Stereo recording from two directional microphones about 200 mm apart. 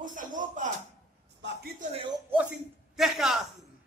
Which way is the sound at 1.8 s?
25° right (ahead or behind).